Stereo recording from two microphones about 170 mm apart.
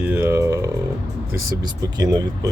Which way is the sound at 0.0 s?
10° right (ahead or behind).